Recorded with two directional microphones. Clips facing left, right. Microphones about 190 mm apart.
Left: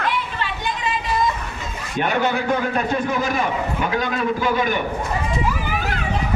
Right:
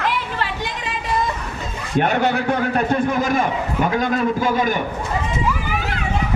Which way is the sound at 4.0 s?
45° right (ahead or behind).